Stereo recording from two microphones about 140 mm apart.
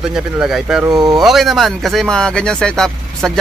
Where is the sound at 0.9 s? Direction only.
25° right (ahead or behind).